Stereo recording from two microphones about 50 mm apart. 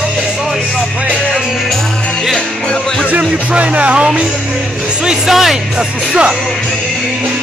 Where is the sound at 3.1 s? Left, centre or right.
Right.